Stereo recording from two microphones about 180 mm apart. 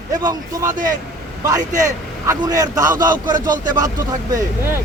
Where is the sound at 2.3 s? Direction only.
20° right (ahead or behind).